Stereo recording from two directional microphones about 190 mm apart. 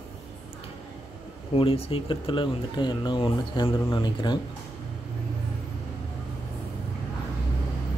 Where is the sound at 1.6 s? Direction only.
30° left (ahead or behind).